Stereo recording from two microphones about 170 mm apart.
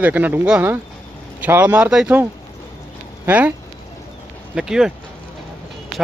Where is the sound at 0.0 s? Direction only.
10° right (ahead or behind).